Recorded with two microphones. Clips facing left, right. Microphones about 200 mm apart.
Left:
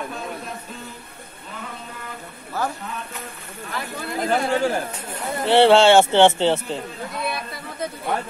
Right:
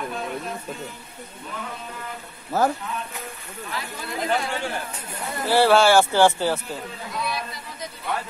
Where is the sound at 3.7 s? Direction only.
55° left (ahead or behind).